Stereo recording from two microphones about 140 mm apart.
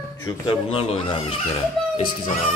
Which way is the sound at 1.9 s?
50° left (ahead or behind).